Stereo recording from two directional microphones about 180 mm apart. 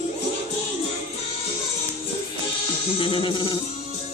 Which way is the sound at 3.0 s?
25° left (ahead or behind).